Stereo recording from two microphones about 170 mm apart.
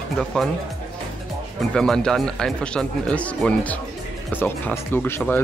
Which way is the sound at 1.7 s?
5° left (ahead or behind).